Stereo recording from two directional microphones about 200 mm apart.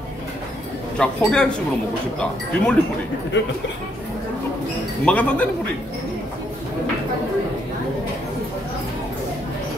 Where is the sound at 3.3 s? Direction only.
65° left (ahead or behind).